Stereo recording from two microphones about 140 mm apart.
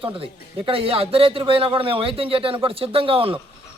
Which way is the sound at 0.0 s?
40° right (ahead or behind).